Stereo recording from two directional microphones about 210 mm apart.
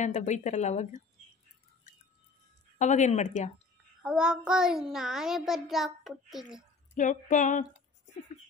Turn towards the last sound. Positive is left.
turn(degrees=35)  # may be behind; listen again after turning